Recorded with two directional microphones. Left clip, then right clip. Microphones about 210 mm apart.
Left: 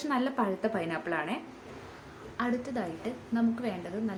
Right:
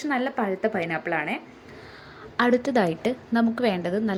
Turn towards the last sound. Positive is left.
turn(degrees=-35)  # may be behind; listen again after turning